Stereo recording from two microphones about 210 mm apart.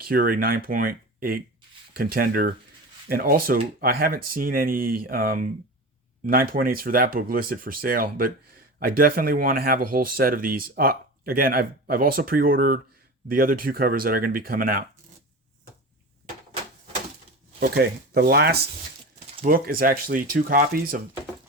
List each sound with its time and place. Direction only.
0.0 s speech: 45° right (ahead or behind)
17.6 s speech: 50° right (ahead or behind)